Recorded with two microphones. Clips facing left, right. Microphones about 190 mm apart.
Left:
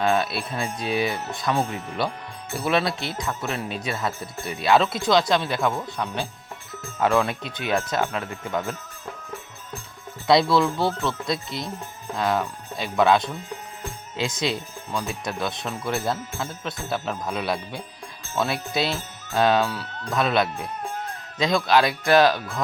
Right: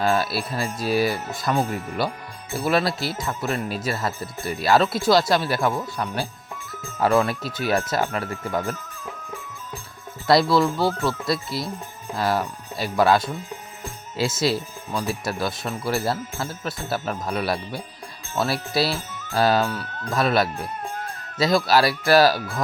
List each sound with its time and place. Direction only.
0.0 s speech: centre (ahead or behind)
7.4 s speech: 40° right (ahead or behind)
7.7 s speech: 5° right (ahead or behind)
10.2 s speech: centre (ahead or behind)